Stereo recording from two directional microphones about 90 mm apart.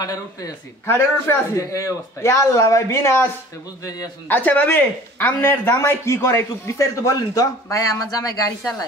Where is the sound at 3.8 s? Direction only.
45° left (ahead or behind).